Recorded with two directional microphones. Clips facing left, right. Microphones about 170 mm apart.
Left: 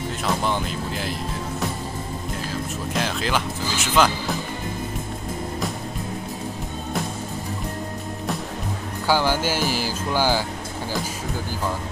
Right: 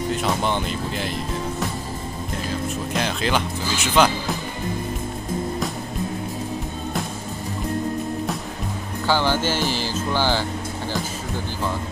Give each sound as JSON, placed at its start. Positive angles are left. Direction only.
{"t": 0.2, "sound": "speech", "side_deg": 0}
{"t": 2.9, "sound": "speech", "side_deg": 0}
{"t": 9.0, "sound": "speech", "side_deg": 10}